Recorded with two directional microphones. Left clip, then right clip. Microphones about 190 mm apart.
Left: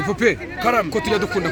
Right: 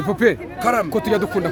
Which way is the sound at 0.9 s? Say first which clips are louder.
Right 1 dB; 55° right (ahead or behind).